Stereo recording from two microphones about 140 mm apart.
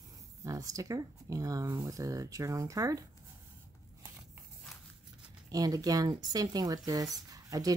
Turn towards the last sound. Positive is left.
turn(degrees=-25)  # may be behind; listen again after turning